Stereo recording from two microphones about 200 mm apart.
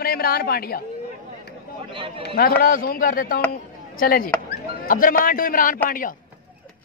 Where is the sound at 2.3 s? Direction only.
45° left (ahead or behind).